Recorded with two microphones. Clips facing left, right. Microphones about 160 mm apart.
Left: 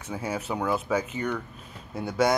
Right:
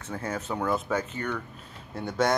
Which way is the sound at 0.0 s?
15° left (ahead or behind).